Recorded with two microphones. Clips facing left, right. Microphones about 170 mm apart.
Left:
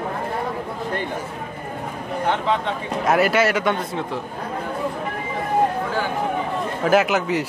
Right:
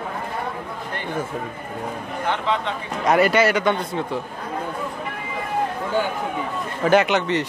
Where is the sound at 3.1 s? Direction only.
Centre (ahead or behind).